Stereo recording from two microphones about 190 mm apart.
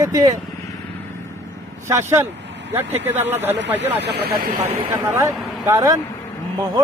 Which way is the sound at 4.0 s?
60° right (ahead or behind).